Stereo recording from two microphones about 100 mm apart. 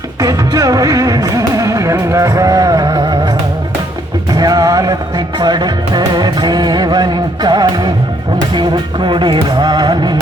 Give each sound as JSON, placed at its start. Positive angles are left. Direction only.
{"t": 0.2, "sound": "music", "side_deg": -35}
{"t": 4.3, "sound": "music", "side_deg": -40}